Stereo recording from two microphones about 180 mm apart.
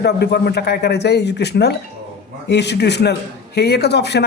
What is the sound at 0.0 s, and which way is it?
A man's voice, 65° left (ahead or behind).